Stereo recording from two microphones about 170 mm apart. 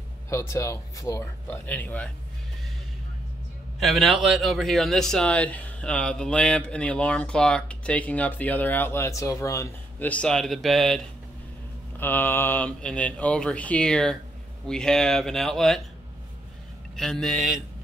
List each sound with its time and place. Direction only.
0.3 s a man's voice: 15° left (ahead or behind)
3.8 s a man's voice: centre (ahead or behind)
12.0 s a man's voice: 10° left (ahead or behind)
16.9 s speech: 5° left (ahead or behind)